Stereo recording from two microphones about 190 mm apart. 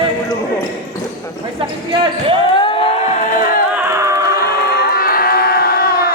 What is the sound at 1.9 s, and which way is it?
Speech, 25° right (ahead or behind).